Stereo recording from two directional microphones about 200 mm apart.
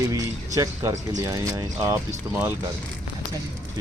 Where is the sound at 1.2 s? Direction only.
15° right (ahead or behind).